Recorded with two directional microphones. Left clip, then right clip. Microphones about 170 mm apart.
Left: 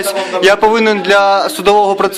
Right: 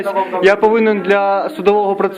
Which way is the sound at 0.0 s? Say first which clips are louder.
Left 1 dB; 15° left (ahead or behind).